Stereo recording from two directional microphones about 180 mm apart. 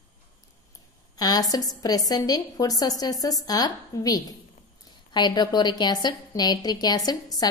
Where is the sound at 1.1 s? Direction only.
20° left (ahead or behind).